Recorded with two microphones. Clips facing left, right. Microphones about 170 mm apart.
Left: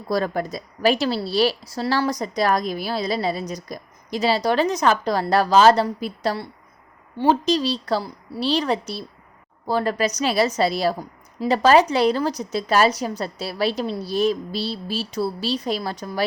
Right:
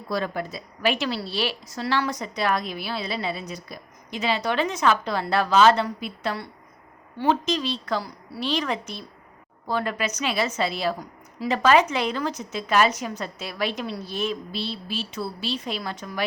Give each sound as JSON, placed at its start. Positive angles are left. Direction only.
{"t": 0.1, "sound": "a woman's voice", "side_deg": 40}